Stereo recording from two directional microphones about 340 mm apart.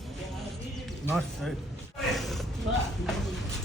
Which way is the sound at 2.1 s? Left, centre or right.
Centre.